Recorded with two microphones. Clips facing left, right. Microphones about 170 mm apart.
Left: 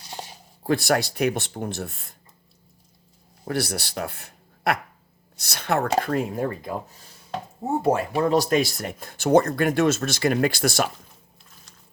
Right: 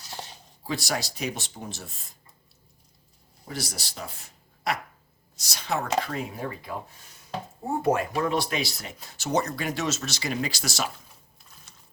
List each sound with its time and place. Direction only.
0.1 s a sound: 10° left (ahead or behind)
0.6 s speech: 55° left (ahead or behind)
3.4 s speech: 60° left (ahead or behind); by 6.7 s 45° left (ahead or behind)
7.8 s speech: 30° left (ahead or behind); by 10.8 s 55° left (ahead or behind)